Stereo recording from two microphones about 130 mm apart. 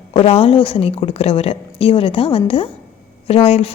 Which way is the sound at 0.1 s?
50° left (ahead or behind).